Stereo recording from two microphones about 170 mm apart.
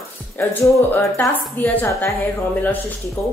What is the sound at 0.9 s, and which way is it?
A woman's voice, 15° left (ahead or behind).